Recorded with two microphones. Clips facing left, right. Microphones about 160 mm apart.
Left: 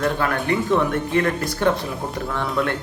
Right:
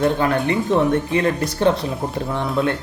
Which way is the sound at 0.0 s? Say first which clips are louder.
Right 4 dB; 25° right (ahead or behind).